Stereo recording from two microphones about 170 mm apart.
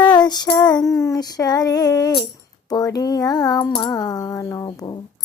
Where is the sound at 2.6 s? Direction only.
25° left (ahead or behind).